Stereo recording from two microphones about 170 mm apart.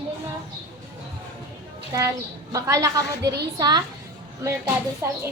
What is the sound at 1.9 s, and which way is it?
A woman's voice, 20° right (ahead or behind).